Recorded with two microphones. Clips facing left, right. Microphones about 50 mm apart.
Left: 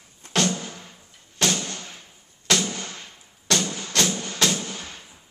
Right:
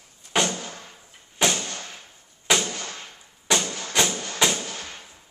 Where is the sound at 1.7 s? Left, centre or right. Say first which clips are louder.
Right 1 dB; right.